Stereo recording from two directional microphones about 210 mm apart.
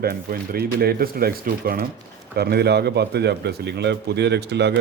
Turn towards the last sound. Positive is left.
turn(degrees=-55)  # may be behind; listen again after turning